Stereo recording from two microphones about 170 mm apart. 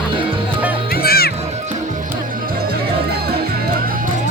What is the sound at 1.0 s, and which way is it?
Music, 65° left (ahead or behind).